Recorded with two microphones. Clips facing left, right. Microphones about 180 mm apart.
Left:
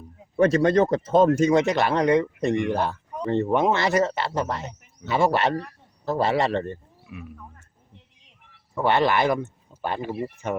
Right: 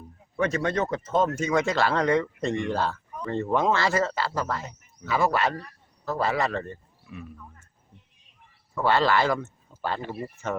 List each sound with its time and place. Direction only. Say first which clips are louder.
0.3 s speech: left 7 dB; 35° left (ahead or behind)
1.6 s speech: left 3 dB; 20° left (ahead or behind)
7.1 s speech: left 1 dB; 10° left (ahead or behind)
8.7 s speech: left 1 dB; 20° left (ahead or behind)